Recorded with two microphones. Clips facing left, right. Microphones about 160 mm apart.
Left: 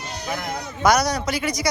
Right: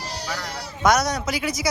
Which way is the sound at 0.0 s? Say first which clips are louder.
Right 1 dB; 35° right (ahead or behind).